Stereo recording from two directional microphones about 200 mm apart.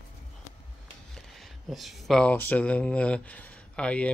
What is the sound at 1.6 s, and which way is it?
Speech, centre (ahead or behind).